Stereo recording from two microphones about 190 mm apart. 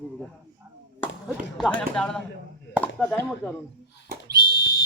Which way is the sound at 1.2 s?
5° left (ahead or behind).